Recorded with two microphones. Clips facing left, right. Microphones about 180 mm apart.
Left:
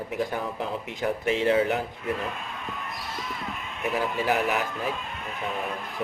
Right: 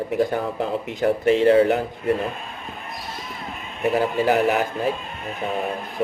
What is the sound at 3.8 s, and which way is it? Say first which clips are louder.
Speech: right 7 dB; 35° right (ahead or behind).